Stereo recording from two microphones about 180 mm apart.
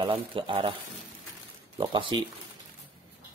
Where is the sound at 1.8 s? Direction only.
25° right (ahead or behind).